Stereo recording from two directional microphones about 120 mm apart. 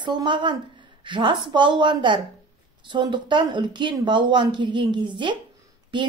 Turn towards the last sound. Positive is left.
turn(degrees=-40)  # may be behind; listen again after turning